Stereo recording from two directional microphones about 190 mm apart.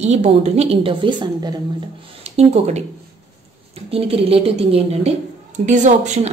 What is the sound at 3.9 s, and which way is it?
A woman's voice, 30° right (ahead or behind).